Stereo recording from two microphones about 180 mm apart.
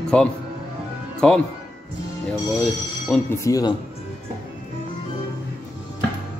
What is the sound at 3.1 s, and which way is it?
Speech, 5° left (ahead or behind).